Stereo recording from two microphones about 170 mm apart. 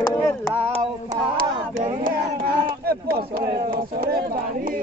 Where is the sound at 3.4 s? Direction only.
65° right (ahead or behind).